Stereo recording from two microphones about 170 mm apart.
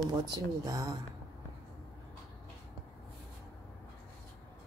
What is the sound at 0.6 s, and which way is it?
Speech, 20° right (ahead or behind).